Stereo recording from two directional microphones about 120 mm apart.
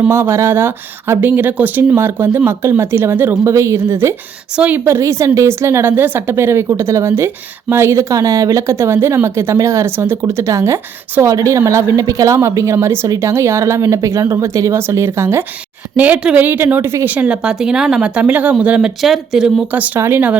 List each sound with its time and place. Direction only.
0.1 s speech: 20° right (ahead or behind)
17.2 s speech: 5° right (ahead or behind)
19.7 s speech: 15° right (ahead or behind)